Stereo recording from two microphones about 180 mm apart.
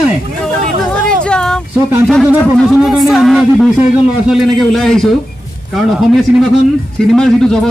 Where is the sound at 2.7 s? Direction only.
Centre (ahead or behind).